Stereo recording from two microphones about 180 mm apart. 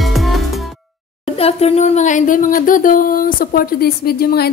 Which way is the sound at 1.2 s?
35° left (ahead or behind).